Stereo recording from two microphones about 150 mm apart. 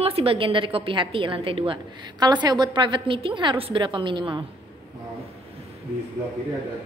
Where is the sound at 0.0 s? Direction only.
40° right (ahead or behind).